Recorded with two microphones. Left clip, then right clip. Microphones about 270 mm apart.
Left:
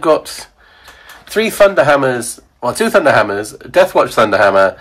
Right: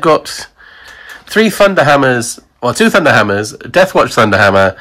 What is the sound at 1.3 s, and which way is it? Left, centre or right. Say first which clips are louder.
Speech: right 1 dB; right.